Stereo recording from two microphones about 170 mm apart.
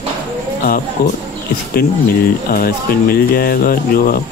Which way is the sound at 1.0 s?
70° left (ahead or behind).